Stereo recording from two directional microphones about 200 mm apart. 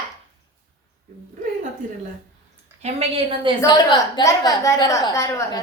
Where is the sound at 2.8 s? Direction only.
30° right (ahead or behind).